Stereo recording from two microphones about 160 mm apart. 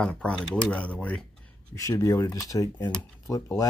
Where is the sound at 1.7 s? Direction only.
20° left (ahead or behind).